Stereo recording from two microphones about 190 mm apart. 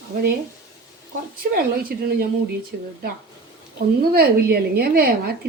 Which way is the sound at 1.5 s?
50° right (ahead or behind).